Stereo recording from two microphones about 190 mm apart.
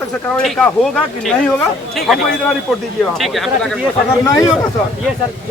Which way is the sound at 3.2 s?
Centre (ahead or behind).